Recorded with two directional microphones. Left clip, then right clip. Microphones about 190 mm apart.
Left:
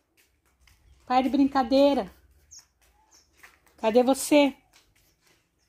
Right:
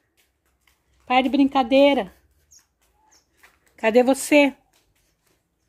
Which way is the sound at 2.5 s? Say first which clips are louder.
Left 4 dB; 25° right (ahead or behind).